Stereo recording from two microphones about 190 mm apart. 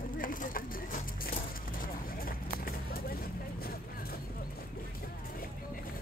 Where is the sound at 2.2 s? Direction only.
50° left (ahead or behind).